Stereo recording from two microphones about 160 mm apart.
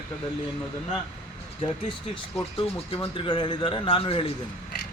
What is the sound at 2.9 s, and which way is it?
A man's voice, 35° left (ahead or behind).